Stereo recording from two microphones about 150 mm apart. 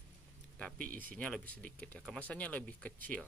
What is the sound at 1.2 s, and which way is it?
Speech, 5° left (ahead or behind).